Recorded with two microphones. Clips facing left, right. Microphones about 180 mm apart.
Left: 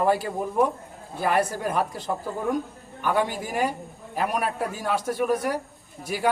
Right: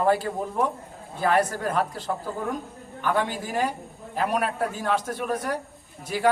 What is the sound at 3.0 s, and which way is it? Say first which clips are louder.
A man's voice: left 1 dB; 10° left (ahead or behind).